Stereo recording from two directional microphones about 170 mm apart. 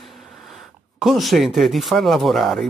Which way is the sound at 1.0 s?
Centre (ahead or behind).